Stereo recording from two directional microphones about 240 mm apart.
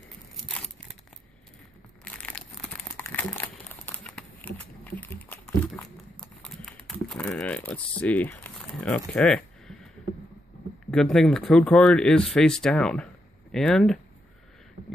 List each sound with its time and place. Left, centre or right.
2.0 s crumpling: centre
10.9 s speech: centre